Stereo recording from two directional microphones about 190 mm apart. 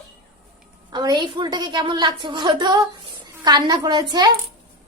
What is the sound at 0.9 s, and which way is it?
A woman's voice, 25° right (ahead or behind).